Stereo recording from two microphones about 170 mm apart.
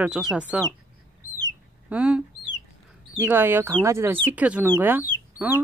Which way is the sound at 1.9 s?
5° right (ahead or behind).